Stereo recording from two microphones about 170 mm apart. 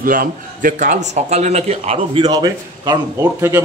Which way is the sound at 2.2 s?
25° right (ahead or behind).